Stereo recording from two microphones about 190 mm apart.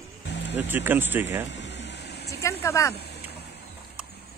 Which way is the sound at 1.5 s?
70° left (ahead or behind).